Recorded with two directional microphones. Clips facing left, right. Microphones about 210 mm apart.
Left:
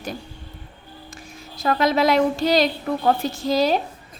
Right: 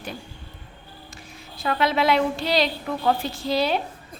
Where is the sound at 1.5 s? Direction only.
40° left (ahead or behind).